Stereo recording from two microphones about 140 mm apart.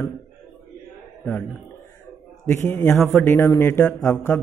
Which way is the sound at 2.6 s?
20° left (ahead or behind).